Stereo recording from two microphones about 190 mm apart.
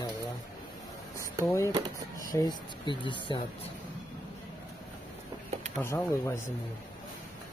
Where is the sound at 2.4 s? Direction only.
25° left (ahead or behind).